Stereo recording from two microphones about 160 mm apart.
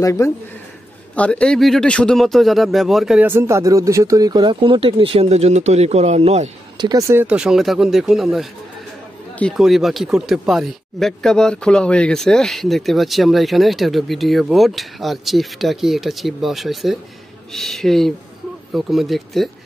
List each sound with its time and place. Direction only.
0.0 s speech: 15° left (ahead or behind); by 3.3 s centre (ahead or behind)
3.3 s speech: 15° right (ahead or behind); by 6.5 s 45° right (ahead or behind)
6.8 s speech: 20° right (ahead or behind); by 19.5 s centre (ahead or behind)